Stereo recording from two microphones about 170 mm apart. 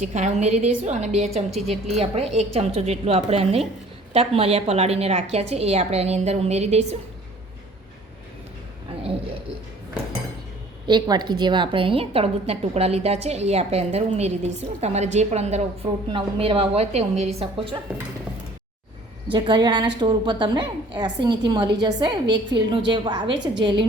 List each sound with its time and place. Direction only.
0.0 s a woman's voice: 45° right (ahead or behind)
1.5 s speech: centre (ahead or behind)
2.0 s a woman's voice: 40° right (ahead or behind)
10.8 s a woman's voice: 25° right (ahead or behind)
19.3 s a woman's voice: 25° right (ahead or behind)